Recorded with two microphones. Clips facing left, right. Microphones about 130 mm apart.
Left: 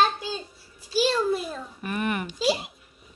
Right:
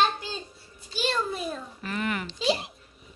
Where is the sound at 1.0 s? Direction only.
5° left (ahead or behind).